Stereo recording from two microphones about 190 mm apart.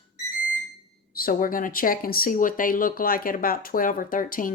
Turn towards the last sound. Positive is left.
turn(degrees=45)  # may be behind; listen again after turning